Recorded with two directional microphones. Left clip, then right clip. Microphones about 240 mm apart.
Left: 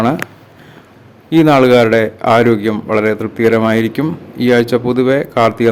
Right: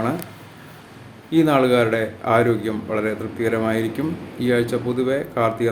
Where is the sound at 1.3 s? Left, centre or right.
Left.